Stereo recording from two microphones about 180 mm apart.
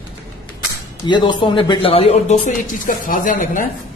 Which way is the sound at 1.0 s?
25° left (ahead or behind).